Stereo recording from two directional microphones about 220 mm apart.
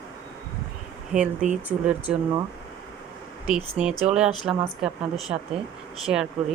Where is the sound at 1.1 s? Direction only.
5° right (ahead or behind).